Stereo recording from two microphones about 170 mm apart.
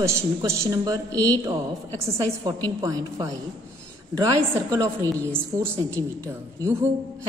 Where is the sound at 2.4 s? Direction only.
20° right (ahead or behind).